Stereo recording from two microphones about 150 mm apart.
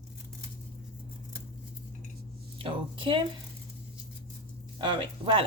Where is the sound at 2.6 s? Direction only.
35° right (ahead or behind).